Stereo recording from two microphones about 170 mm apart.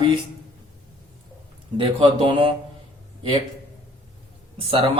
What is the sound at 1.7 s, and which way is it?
Speech, 30° right (ahead or behind).